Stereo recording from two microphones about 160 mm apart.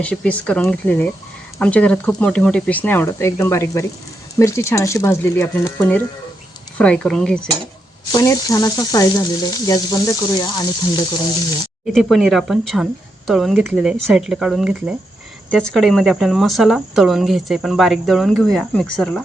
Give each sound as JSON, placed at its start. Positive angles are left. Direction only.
{"t": 0.0, "sound": "speech", "side_deg": 10}
{"t": 8.1, "sound": "frying", "side_deg": 20}
{"t": 11.9, "sound": "speech", "side_deg": 0}